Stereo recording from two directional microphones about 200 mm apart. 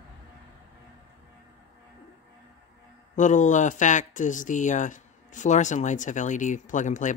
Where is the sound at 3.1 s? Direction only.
40° left (ahead or behind).